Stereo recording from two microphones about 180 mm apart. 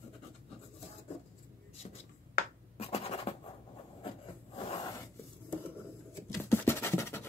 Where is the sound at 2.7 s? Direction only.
35° left (ahead or behind).